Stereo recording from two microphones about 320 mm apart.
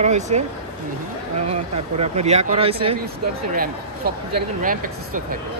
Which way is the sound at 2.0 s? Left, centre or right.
Centre.